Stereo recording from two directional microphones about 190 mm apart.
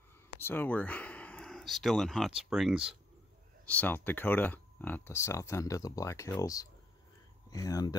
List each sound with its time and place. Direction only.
0.4 s speech: 10° left (ahead or behind)
3.6 s speech: 10° left (ahead or behind)